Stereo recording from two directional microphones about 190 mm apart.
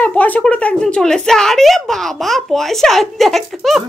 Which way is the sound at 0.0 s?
10° left (ahead or behind).